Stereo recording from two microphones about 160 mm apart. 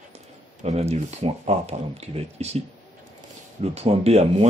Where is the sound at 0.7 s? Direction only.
40° right (ahead or behind).